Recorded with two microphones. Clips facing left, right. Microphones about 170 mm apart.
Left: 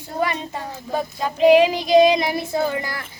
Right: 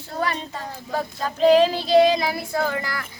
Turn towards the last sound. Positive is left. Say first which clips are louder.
# left 2 dB
turn(degrees=20)  # may be behind; listen again after turning